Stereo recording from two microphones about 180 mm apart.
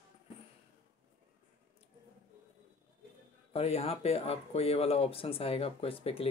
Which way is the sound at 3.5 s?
35° left (ahead or behind).